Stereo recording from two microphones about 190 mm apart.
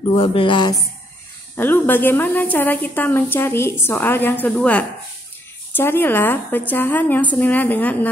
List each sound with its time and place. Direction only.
0.1 s speech: 30° left (ahead or behind)
1.6 s a woman's voice: 10° left (ahead or behind)